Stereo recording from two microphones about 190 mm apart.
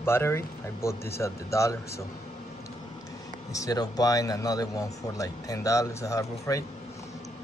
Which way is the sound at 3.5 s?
20° left (ahead or behind).